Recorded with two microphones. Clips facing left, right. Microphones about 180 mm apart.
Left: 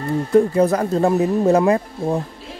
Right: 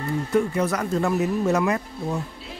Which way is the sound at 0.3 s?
35° left (ahead or behind).